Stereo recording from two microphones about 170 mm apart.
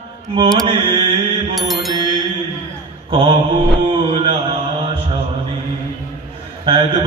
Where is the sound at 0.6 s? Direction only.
30° right (ahead or behind).